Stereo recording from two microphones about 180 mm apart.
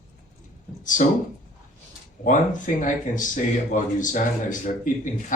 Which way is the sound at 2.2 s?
45° left (ahead or behind).